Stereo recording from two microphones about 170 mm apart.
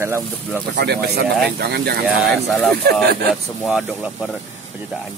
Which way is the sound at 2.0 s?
Centre (ahead or behind).